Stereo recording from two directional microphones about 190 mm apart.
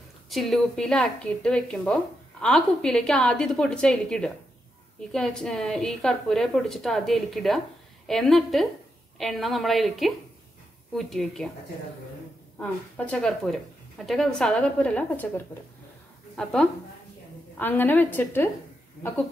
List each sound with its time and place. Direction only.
0.3 s speech: centre (ahead or behind)
12.5 s speech: 10° left (ahead or behind)
17.6 s a woman's voice: 10° left (ahead or behind)